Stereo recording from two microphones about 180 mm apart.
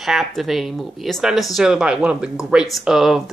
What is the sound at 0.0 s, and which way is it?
Speech, centre (ahead or behind).